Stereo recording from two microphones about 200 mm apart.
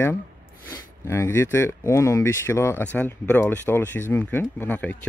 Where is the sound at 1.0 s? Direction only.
15° left (ahead or behind).